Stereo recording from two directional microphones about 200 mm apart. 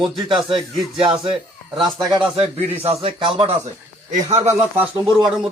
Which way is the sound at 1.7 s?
Centre (ahead or behind).